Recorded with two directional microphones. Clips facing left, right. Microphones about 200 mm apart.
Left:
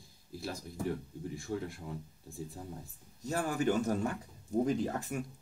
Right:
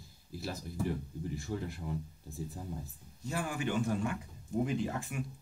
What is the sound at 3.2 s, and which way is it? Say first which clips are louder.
Speech: left 4 dB; 40° left (ahead or behind).